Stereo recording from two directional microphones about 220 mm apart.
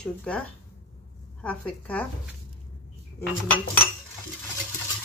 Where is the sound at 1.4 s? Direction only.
5° left (ahead or behind).